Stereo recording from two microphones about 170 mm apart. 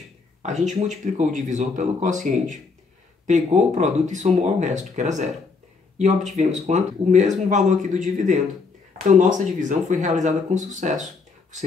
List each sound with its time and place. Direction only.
0.4 s speech: 40° right (ahead or behind)